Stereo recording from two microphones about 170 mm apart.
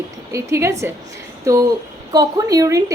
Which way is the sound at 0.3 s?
15° right (ahead or behind).